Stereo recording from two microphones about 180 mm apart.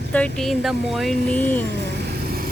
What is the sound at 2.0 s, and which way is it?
Vehicle, 60° right (ahead or behind).